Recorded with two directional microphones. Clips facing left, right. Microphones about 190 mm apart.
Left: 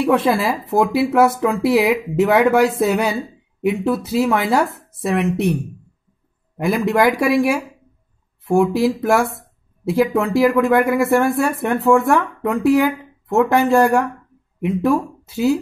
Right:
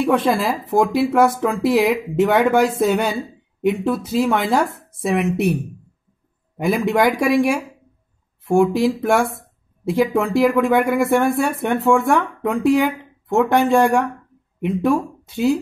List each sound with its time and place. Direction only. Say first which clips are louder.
0.0 s speech: left 1 dB; centre (ahead or behind)